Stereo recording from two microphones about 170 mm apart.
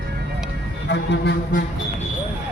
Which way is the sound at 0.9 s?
90° left.